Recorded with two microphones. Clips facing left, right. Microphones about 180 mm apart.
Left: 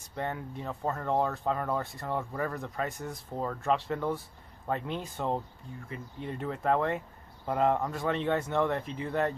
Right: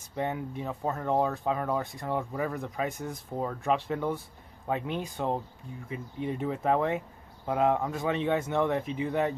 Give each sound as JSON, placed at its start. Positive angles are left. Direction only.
{"t": 0.1, "sound": "speech", "side_deg": -10}